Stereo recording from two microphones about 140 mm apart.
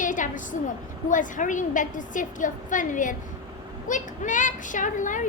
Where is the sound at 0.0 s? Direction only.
65° left (ahead or behind).